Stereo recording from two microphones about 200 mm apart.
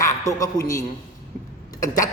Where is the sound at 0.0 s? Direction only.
15° left (ahead or behind).